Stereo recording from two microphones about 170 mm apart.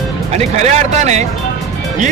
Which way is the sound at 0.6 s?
45° right (ahead or behind).